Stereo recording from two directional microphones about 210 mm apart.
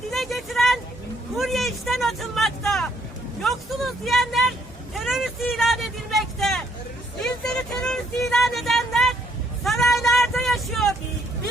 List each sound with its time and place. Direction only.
0.1 s vehicle: centre (ahead or behind)
1.4 s speech: centre (ahead or behind)
4.9 s vehicle: centre (ahead or behind)